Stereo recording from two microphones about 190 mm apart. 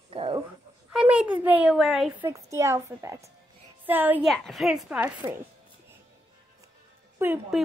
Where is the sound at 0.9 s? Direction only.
5° right (ahead or behind).